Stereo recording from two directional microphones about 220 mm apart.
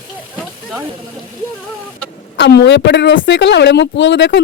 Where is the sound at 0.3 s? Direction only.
5° right (ahead or behind).